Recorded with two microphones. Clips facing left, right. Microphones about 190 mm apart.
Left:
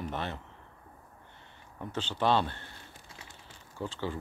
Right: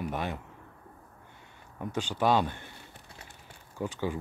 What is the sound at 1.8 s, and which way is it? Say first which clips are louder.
Speech: right 2 dB; 10° right (ahead or behind).